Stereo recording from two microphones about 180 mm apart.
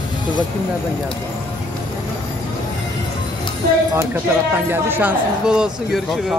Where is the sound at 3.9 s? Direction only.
15° right (ahead or behind).